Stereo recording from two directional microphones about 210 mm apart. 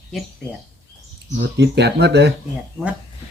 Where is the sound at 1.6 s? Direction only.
55° right (ahead or behind).